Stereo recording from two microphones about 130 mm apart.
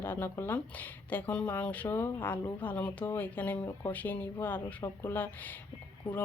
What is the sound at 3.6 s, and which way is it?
Speech, 20° left (ahead or behind).